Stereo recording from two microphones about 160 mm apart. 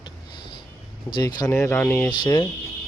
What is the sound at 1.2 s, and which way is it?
Speech, 25° left (ahead or behind).